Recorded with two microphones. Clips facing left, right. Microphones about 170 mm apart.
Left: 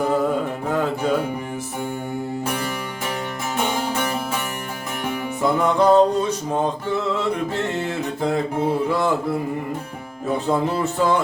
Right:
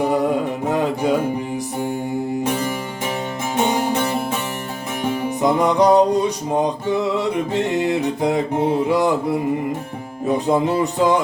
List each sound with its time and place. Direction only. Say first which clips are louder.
0.0 s mantra: right 2 dB; 15° right (ahead or behind)
0.7 s music: right 2 dB; 15° right (ahead or behind)
3.6 s music: right 4 dB; 25° right (ahead or behind)
5.4 s music: right 2 dB; 15° right (ahead or behind)